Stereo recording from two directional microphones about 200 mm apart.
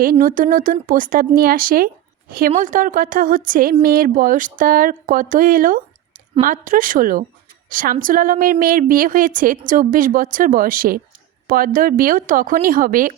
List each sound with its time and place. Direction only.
0.0 s speech: 45° right (ahead or behind)